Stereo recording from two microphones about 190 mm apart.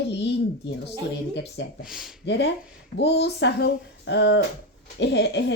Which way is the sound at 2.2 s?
65° left (ahead or behind).